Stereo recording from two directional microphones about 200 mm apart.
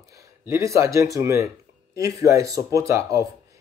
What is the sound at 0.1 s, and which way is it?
Speech, 15° right (ahead or behind).